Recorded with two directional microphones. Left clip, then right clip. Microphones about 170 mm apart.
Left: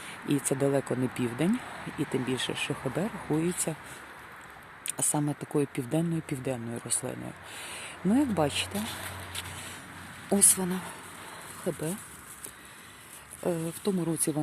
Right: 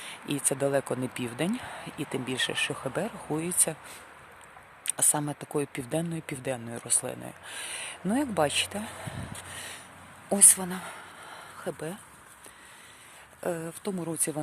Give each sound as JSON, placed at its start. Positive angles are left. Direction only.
{"t": 0.1, "sound": "speech", "side_deg": -10}
{"t": 5.1, "sound": "speech", "side_deg": -10}
{"t": 10.2, "sound": "speech", "side_deg": -10}
{"t": 13.4, "sound": "speech", "side_deg": -5}